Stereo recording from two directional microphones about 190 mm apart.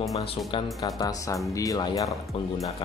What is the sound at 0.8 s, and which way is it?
Speech, 20° left (ahead or behind).